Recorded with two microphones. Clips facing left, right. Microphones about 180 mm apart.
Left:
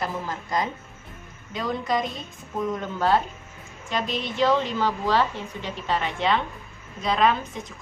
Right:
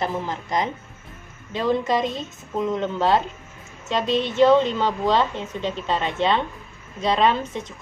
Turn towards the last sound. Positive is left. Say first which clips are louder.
# right 2 dB
turn(degrees=-25)  # may be behind; listen again after turning